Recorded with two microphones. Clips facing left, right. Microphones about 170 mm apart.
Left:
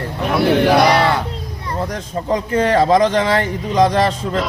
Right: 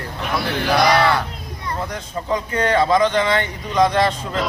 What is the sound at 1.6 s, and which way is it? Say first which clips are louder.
Speech: left 3 dB; 40° left (ahead or behind).